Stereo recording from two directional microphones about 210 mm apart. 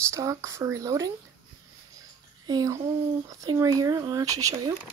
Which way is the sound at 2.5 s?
20° right (ahead or behind).